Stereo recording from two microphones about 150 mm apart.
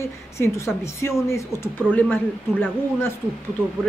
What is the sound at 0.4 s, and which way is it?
A woman's voice, 15° left (ahead or behind).